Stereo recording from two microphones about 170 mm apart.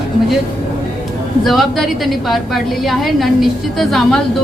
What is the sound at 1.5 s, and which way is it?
A woman's voice, centre (ahead or behind).